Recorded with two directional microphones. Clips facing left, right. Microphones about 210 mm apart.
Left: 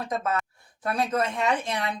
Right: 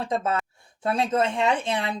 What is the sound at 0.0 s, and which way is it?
Speech, 30° right (ahead or behind).